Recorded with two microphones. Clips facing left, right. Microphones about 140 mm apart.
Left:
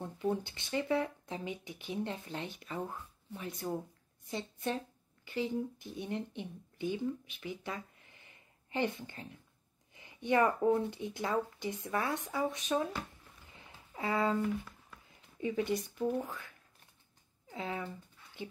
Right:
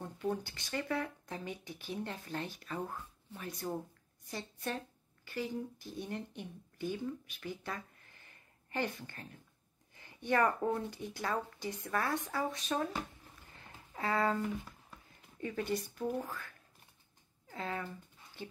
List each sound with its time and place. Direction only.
0.0 s speech: 20° left (ahead or behind)
13.5 s a sound: 15° left (ahead or behind)
15.3 s speech: 15° left (ahead or behind)